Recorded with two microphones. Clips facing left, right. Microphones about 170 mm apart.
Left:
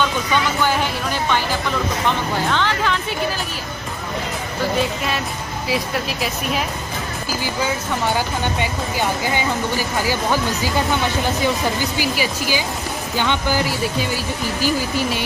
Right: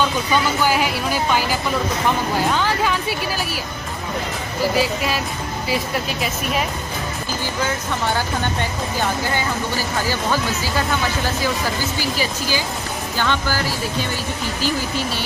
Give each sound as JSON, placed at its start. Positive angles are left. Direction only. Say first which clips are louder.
{"t": 0.7, "sound": "speech", "louder": "right 1 dB", "side_deg": -10}
{"t": 4.7, "sound": "speech", "louder": "right 1 dB", "side_deg": 0}
{"t": 9.3, "sound": "speech", "louder": "left 2 dB", "side_deg": 15}
{"t": 12.0, "sound": "speech", "louder": "left 2 dB", "side_deg": 15}